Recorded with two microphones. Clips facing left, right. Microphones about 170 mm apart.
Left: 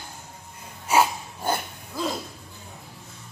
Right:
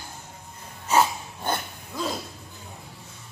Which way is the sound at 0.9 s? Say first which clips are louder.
Left 1 dB; 10° left (ahead or behind).